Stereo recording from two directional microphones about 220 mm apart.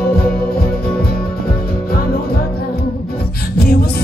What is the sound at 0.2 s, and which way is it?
Music, 45° left (ahead or behind).